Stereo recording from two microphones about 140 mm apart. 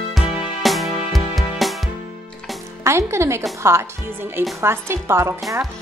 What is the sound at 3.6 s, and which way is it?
A woman's voice, 15° right (ahead or behind).